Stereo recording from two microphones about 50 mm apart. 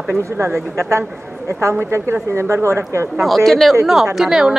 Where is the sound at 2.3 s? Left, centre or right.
Right.